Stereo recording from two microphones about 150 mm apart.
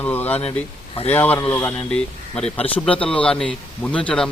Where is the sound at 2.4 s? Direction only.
40° left (ahead or behind).